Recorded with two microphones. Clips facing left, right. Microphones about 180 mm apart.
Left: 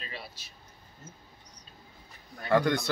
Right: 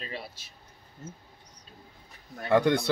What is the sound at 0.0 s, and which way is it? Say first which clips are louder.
Air conditioning: right 4 dB; 45° right (ahead or behind).